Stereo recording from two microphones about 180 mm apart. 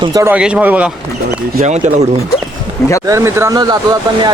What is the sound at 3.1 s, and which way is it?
Speech, 15° right (ahead or behind).